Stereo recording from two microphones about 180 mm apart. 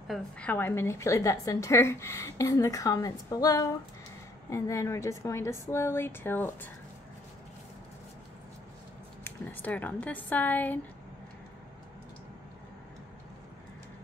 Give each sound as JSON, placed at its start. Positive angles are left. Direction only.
{"t": 0.1, "sound": "a woman's voice", "side_deg": 10}
{"t": 9.2, "sound": "a woman's voice", "side_deg": 10}